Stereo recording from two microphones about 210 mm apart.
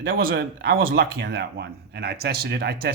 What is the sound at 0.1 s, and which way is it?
Speech, 45° right (ahead or behind).